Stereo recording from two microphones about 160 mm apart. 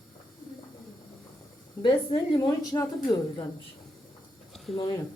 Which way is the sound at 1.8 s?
25° left (ahead or behind).